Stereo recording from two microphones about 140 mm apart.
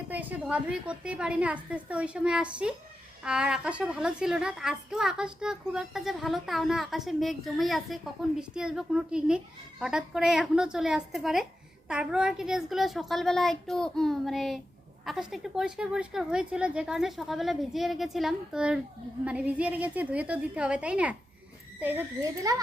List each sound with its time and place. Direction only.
0.1 s a woman's voice: 10° right (ahead or behind)